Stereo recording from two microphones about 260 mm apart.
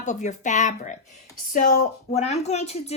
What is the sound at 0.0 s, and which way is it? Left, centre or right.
Speech, left.